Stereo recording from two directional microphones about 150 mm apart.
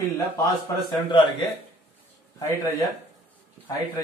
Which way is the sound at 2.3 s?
20° left (ahead or behind).